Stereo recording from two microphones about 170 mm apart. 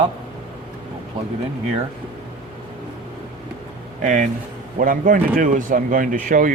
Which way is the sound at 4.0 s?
50° right (ahead or behind).